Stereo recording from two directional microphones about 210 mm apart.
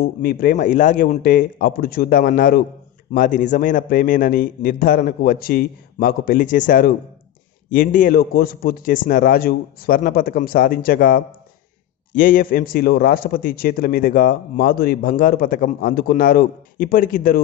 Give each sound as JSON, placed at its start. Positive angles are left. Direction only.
{"t": 0.0, "sound": "a man's voice", "side_deg": 45}